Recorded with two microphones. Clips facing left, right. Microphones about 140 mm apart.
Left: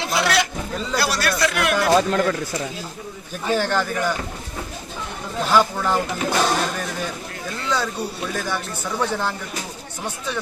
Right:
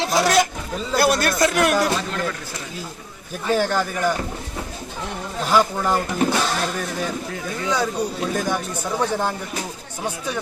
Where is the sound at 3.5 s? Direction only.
10° right (ahead or behind).